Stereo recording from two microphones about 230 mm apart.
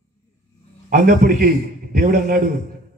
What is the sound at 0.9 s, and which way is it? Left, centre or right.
A man's voice, right.